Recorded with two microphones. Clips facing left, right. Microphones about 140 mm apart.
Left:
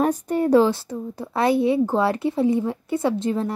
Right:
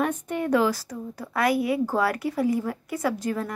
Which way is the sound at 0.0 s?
35° left (ahead or behind).